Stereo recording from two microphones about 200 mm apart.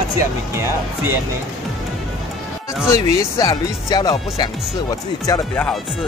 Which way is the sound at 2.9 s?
15° left (ahead or behind).